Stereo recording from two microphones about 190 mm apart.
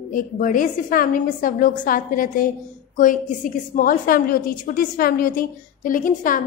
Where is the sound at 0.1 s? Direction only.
45° left (ahead or behind).